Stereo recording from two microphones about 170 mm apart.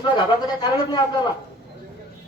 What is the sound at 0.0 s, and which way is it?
A man's voice, 25° left (ahead or behind).